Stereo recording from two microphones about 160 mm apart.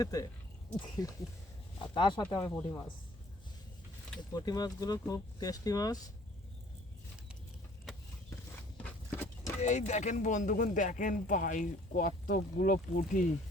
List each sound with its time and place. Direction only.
0.0 s speech: 20° left (ahead or behind)
4.4 s speech: 25° left (ahead or behind)
9.6 s speech: 45° left (ahead or behind)